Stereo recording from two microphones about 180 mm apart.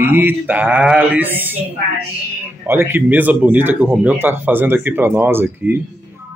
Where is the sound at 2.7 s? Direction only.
10° right (ahead or behind).